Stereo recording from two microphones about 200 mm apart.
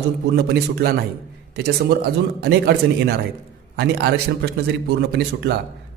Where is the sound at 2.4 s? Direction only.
55° right (ahead or behind).